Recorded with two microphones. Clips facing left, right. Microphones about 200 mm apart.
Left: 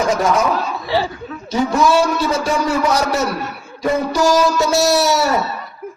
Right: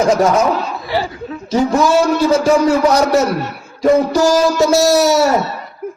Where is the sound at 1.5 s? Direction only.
40° right (ahead or behind).